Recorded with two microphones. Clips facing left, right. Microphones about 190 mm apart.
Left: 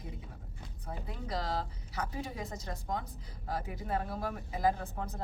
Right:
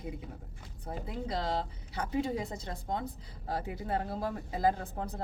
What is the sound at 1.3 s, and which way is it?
Speech, 25° right (ahead or behind).